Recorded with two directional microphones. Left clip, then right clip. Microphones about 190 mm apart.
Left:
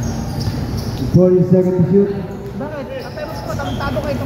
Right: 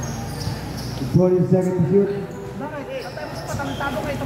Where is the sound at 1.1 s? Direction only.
25° left (ahead or behind).